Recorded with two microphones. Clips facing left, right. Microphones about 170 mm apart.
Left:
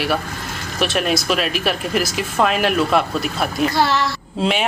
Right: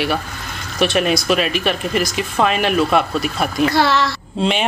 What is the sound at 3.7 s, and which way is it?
Speech, 75° right (ahead or behind).